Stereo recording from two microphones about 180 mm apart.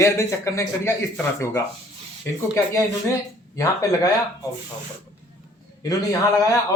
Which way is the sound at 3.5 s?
20° left (ahead or behind).